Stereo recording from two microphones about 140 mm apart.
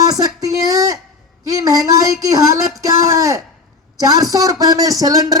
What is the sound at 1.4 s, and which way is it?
Speech, 25° right (ahead or behind).